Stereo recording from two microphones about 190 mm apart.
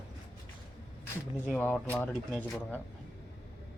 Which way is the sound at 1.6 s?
10° left (ahead or behind).